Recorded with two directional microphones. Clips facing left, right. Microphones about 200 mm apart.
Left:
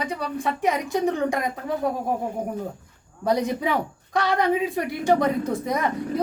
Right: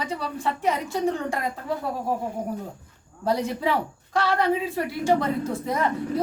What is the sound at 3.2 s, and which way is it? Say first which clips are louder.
A woman's voice: left 1 dB; 15° left (ahead or behind).